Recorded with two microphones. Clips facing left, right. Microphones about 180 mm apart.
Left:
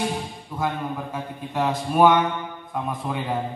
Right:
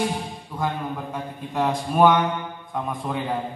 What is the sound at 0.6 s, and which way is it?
A man's voice, 5° left (ahead or behind).